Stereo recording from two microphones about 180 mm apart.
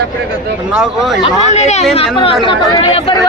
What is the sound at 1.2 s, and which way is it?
Speech, 40° left (ahead or behind).